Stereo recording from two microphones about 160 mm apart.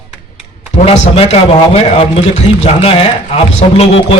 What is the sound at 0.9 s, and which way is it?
A man's voice, 35° left (ahead or behind).